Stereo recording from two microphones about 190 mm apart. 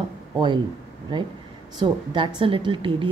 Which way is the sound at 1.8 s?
25° right (ahead or behind).